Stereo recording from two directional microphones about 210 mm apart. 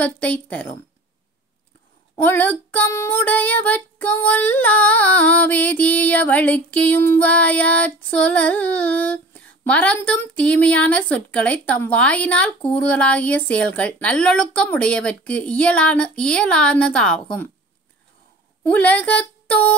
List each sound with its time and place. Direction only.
0.0 s female singing: 5° left (ahead or behind)
2.2 s female singing: 10° left (ahead or behind)
18.6 s speech: 5° left (ahead or behind)